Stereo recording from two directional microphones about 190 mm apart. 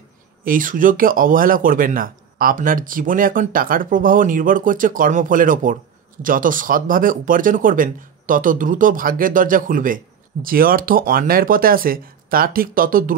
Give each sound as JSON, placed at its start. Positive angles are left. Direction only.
{"t": 0.4, "sound": "speech", "side_deg": -45}